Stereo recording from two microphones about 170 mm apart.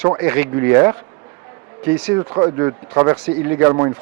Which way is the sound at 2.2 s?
20° right (ahead or behind).